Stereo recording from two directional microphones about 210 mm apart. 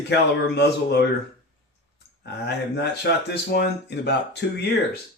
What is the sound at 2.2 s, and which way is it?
Speech, 50° left (ahead or behind).